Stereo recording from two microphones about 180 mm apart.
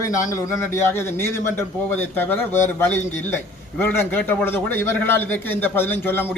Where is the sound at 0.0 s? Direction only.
20° left (ahead or behind).